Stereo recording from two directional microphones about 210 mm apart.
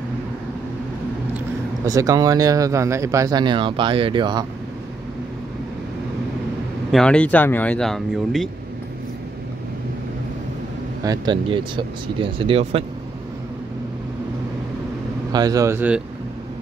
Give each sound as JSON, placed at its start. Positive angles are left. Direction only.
{"t": 1.9, "sound": "speech", "side_deg": -15}
{"t": 6.9, "sound": "speech", "side_deg": 5}
{"t": 11.1, "sound": "speech", "side_deg": -20}
{"t": 15.3, "sound": "speech", "side_deg": -15}